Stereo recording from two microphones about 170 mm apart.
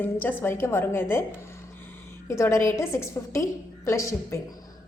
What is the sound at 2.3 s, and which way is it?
A woman's voice, 15° left (ahead or behind).